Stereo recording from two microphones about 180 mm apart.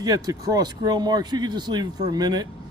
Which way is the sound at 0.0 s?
20° right (ahead or behind).